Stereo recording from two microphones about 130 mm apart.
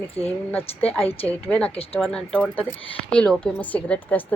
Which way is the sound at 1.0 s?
50° left (ahead or behind).